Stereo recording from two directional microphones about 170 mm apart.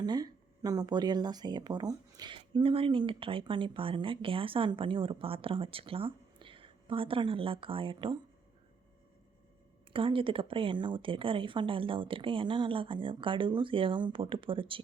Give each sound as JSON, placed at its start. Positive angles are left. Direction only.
{"t": 0.0, "sound": "speech", "side_deg": -25}
{"t": 9.9, "sound": "speech", "side_deg": -30}